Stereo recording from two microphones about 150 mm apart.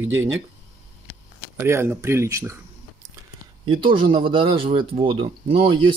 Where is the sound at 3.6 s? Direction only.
35° right (ahead or behind).